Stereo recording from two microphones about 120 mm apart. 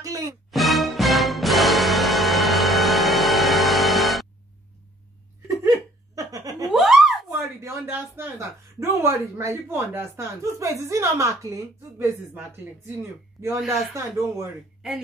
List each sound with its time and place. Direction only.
0.0 s music: 25° right (ahead or behind)
0.5 s music: centre (ahead or behind)
6.1 s laughter: 30° right (ahead or behind)
6.7 s giggle: 5° right (ahead or behind)
7.2 s a sound: 25° right (ahead or behind)
10.6 s a woman's voice: 25° right (ahead or behind)
13.7 s a woman's voice: 25° right (ahead or behind)